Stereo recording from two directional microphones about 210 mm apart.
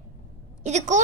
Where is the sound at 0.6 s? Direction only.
35° right (ahead or behind).